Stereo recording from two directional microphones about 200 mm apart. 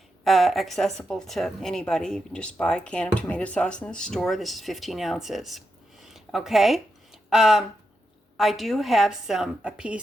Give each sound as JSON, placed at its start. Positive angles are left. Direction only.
{"t": 0.3, "sound": "speech", "side_deg": 0}
{"t": 6.1, "sound": "a sound", "side_deg": 0}
{"t": 8.4, "sound": "speech", "side_deg": 0}